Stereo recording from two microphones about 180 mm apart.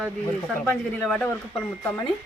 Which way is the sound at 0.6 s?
5° left (ahead or behind).